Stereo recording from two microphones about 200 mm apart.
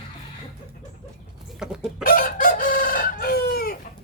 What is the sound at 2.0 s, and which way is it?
Chicken, 45° left (ahead or behind).